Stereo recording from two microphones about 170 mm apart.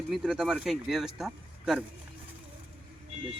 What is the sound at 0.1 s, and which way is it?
Speech, 5° right (ahead or behind).